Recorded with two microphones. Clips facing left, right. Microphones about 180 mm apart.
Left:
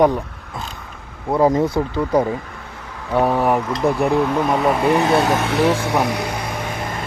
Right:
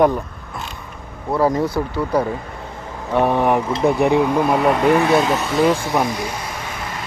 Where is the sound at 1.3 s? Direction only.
20° left (ahead or behind).